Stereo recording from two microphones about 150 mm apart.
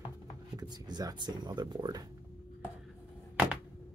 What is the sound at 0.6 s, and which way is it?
Speech, 30° right (ahead or behind).